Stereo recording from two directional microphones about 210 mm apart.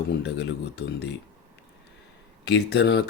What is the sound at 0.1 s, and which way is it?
Speech, 55° left (ahead or behind).